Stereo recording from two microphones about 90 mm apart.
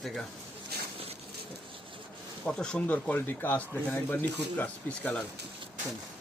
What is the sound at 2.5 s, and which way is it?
Speech, 10° left (ahead or behind).